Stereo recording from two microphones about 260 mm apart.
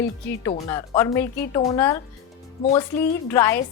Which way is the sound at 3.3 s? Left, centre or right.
Centre.